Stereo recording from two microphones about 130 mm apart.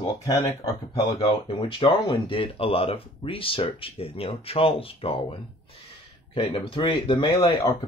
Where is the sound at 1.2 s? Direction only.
45° left (ahead or behind).